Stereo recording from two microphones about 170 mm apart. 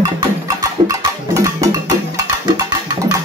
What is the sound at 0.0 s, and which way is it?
Music, 20° right (ahead or behind).